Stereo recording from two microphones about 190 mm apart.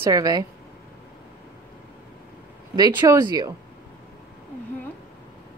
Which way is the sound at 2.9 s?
15° right (ahead or behind).